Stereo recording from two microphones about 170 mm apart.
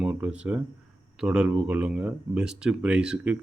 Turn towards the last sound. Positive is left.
turn(degrees=-5)  # may be behind; listen again after turning